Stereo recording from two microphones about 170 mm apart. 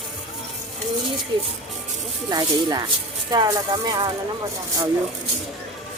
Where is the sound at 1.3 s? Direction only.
30° right (ahead or behind).